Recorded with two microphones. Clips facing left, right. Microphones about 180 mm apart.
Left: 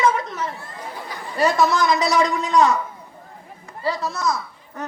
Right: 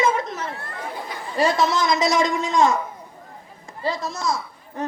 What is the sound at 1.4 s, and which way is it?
A man's voice, 25° right (ahead or behind).